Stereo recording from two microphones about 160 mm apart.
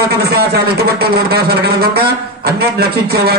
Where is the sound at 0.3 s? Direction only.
80° right.